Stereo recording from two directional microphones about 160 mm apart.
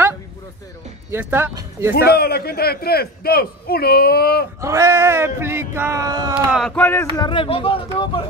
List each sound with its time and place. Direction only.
1.1 s speech: 10° right (ahead or behind)
1.5 s speech: 25° right (ahead or behind)
2.0 s a man's voice: 75° left (ahead or behind)
4.6 s speech: 20° right (ahead or behind)
6.3 s speech: centre (ahead or behind)
6.7 s speech: 10° left (ahead or behind)
7.2 s speech: 30° left (ahead or behind)